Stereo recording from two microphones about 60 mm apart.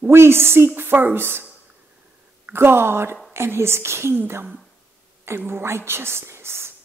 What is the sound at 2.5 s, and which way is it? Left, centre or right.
A woman's voice, right.